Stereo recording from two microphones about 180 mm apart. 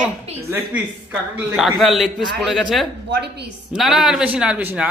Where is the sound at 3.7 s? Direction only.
Centre (ahead or behind).